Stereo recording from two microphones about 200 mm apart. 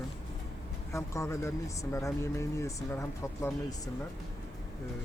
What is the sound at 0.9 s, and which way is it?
Speech, 15° left (ahead or behind).